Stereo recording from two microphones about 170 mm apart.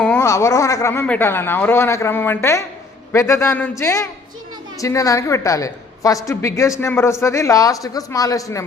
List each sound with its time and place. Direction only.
0.0 s a woman's voice: 10° left (ahead or behind)